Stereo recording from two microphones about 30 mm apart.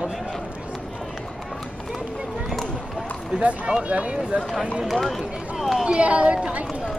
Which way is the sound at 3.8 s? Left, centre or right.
Right.